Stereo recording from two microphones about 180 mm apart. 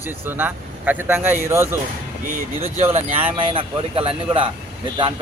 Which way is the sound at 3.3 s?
30° right (ahead or behind).